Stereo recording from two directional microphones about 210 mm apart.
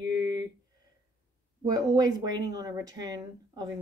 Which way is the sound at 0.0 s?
15° right (ahead or behind).